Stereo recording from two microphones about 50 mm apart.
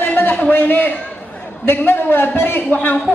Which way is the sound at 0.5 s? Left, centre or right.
Left.